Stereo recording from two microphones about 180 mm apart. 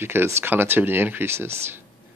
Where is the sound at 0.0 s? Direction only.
10° right (ahead or behind).